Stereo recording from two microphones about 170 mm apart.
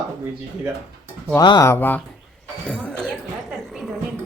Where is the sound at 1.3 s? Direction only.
20° left (ahead or behind).